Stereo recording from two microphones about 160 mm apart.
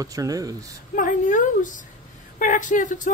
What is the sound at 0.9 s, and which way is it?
Speech, 55° left (ahead or behind).